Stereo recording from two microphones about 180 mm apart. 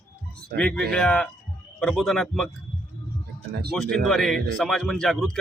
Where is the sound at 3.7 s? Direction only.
Centre (ahead or behind).